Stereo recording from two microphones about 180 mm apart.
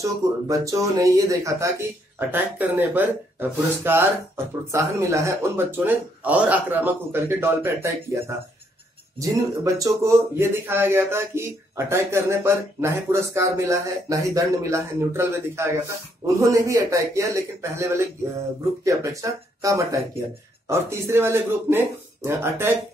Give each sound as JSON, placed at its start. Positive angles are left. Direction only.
{"t": 0.0, "sound": "speech", "side_deg": -20}
{"t": 9.8, "sound": "speech", "side_deg": -15}